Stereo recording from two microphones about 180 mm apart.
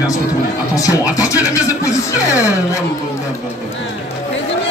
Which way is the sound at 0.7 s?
20° left (ahead or behind).